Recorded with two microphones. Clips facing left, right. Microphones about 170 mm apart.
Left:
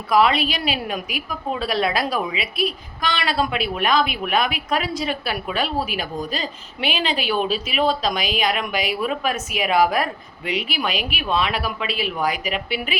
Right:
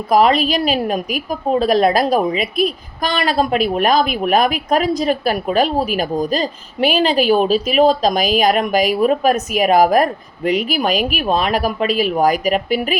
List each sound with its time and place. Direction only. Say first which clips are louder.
0.1 s a woman's voice: right 5 dB; 40° right (ahead or behind)